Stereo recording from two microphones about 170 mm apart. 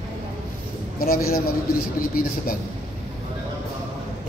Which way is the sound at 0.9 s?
60° left (ahead or behind).